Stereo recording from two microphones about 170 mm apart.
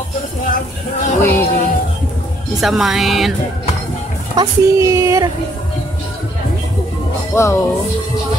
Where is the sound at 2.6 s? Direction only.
Centre (ahead or behind).